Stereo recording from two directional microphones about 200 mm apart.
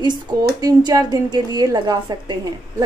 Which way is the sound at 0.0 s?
20° right (ahead or behind).